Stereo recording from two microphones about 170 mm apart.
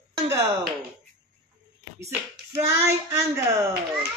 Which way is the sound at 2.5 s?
15° right (ahead or behind).